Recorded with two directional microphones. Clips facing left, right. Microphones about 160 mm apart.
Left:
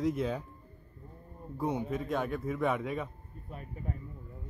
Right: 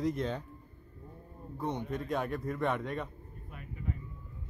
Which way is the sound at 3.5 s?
35° left (ahead or behind).